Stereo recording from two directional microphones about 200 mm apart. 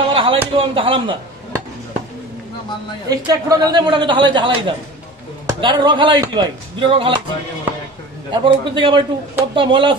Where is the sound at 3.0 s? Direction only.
15° right (ahead or behind).